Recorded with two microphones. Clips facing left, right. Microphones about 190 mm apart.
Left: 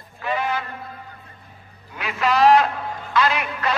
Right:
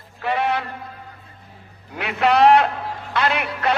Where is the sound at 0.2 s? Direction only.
65° right (ahead or behind).